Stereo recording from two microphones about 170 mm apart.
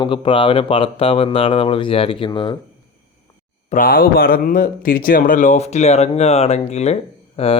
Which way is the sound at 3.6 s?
55° left (ahead or behind).